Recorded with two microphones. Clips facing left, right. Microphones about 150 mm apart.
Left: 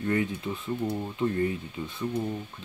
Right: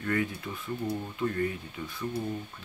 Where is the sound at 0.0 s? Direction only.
20° left (ahead or behind).